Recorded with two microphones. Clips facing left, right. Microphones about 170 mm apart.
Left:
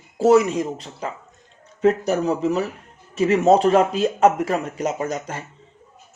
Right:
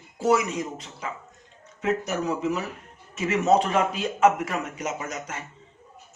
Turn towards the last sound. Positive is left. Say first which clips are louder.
# left 7 dB
turn(degrees=35)  # may be behind; listen again after turning